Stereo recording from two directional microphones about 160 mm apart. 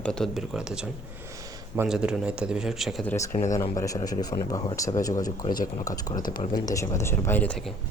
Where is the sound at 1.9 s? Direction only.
5° right (ahead or behind).